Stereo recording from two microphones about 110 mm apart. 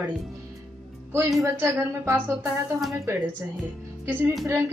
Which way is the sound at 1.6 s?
25° right (ahead or behind).